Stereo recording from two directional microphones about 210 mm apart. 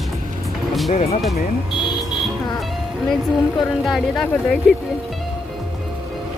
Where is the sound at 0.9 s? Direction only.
30° left (ahead or behind).